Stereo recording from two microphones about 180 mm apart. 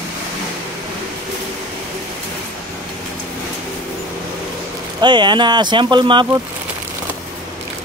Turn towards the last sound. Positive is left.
turn(degrees=-25)  # may be behind; listen again after turning